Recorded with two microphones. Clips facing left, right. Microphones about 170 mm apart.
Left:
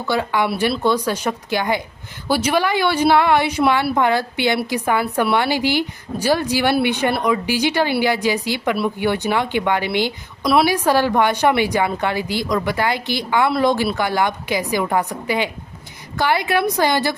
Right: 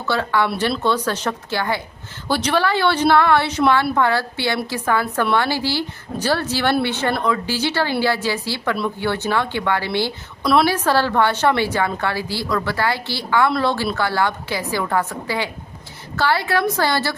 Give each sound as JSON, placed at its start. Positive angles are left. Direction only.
{"t": 0.0, "sound": "a woman's voice", "side_deg": 15}
{"t": 10.4, "sound": "a woman's voice", "side_deg": 5}